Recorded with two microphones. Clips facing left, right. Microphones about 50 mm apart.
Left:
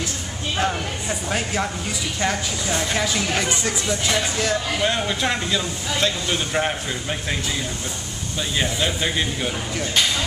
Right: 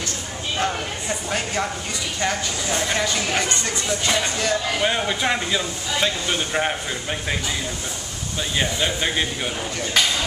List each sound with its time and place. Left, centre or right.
0.6 s speech: centre
8.4 s speech: centre